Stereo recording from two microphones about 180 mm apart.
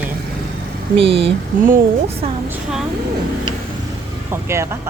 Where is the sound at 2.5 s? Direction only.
5° right (ahead or behind).